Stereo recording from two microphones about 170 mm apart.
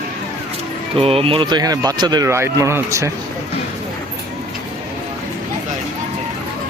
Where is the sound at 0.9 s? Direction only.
35° right (ahead or behind); by 3.1 s 15° right (ahead or behind).